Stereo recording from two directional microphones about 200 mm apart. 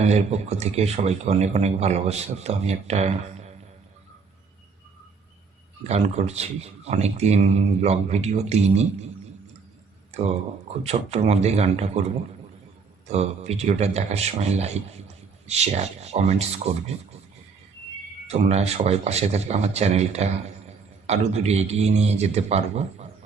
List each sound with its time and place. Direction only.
0.0 s a man's voice: 35° right (ahead or behind)
5.9 s a man's voice: 30° right (ahead or behind)
10.1 s a sound: 35° right (ahead or behind)
10.8 s a man's voice: 30° right (ahead or behind)
13.1 s a man's voice: 35° right (ahead or behind)
18.3 s a man's voice: 30° right (ahead or behind)